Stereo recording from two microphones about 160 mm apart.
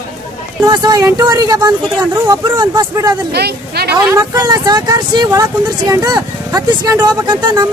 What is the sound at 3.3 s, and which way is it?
Speech, 90° right.